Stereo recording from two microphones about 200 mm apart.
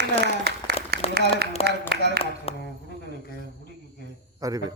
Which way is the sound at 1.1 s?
55° right (ahead or behind).